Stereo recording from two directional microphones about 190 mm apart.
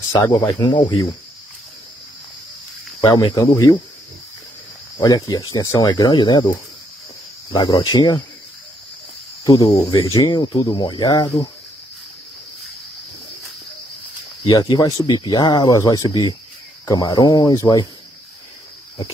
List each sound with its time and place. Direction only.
0.1 s speech: 15° left (ahead or behind)
3.1 s speech: 20° left (ahead or behind)
4.9 s speech: 20° left (ahead or behind)
7.5 s speech: 20° left (ahead or behind)
9.4 s speech: 20° left (ahead or behind)
14.4 s speech: 25° left (ahead or behind)